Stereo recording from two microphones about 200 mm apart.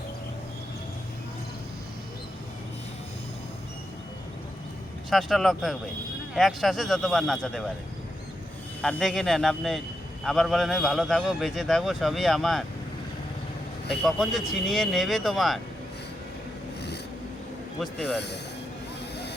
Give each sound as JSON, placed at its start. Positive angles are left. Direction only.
{"t": 5.1, "sound": "a man's voice", "side_deg": 0}
{"t": 8.8, "sound": "a man's voice", "side_deg": 5}
{"t": 14.0, "sound": "a man's voice", "side_deg": 0}
{"t": 18.0, "sound": "speech", "side_deg": 55}